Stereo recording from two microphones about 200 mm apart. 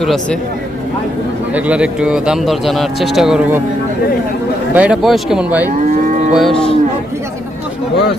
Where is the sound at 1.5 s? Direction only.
5° right (ahead or behind).